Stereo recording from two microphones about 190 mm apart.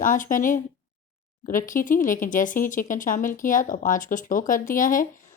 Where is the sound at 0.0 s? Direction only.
45° left (ahead or behind).